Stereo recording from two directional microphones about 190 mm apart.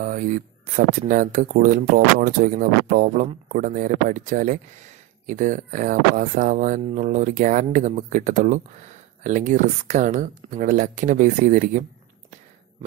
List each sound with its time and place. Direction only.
0.0 s speech: 45° right (ahead or behind)